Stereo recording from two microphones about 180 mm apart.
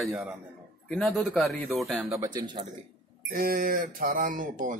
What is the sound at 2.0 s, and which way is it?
Speech, 20° right (ahead or behind).